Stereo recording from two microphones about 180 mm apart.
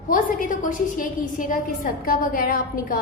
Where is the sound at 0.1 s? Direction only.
50° left (ahead or behind).